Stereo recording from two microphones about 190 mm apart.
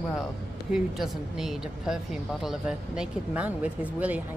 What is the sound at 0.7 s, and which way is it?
A woman's voice, centre (ahead or behind).